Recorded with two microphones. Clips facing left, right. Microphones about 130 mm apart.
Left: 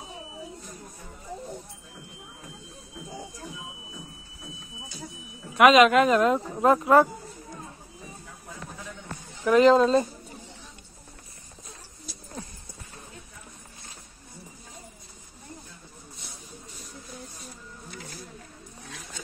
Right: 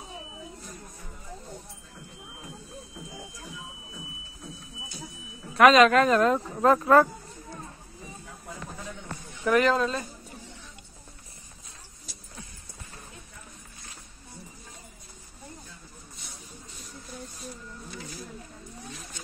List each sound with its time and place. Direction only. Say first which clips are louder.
5.6 s speech: left 1 dB; 15° left (ahead or behind)
9.4 s speech: left 5 dB; 20° left (ahead or behind)